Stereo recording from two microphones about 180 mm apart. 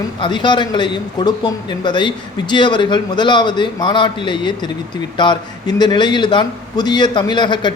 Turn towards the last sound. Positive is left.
turn(degrees=25)  # may be behind; listen again after turning